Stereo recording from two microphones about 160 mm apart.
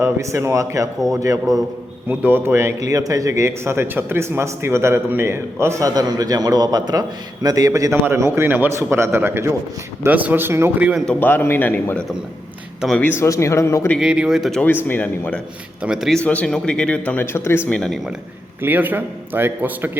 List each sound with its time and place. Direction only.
0.0 s a man's voice: 15° right (ahead or behind)
11.0 s speech: 10° left (ahead or behind)
14.0 s speech: 5° right (ahead or behind)
14.8 s speech: 10° left (ahead or behind)
15.8 s speech: 5° right (ahead or behind); by 17.6 s 15° left (ahead or behind)
17.7 s speech: 5° left (ahead or behind)
18.6 s a man's voice: 10° right (ahead or behind)